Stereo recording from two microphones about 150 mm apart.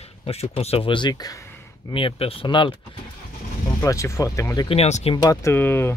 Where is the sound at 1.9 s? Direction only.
40° left (ahead or behind).